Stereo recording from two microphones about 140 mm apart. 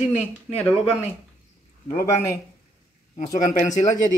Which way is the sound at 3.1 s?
60° left (ahead or behind).